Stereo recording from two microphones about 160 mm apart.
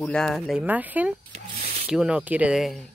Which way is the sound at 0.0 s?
5° left (ahead or behind).